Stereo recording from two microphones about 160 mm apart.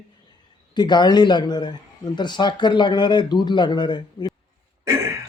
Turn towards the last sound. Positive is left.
turn(degrees=-20)  # may be behind; listen again after turning